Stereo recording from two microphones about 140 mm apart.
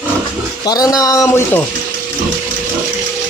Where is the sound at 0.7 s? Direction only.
25° left (ahead or behind).